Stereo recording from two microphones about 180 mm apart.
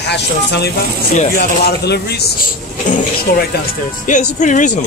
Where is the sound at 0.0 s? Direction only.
65° left (ahead or behind).